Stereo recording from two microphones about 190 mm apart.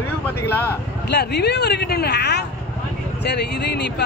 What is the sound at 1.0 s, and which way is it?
Speech, 60° left (ahead or behind).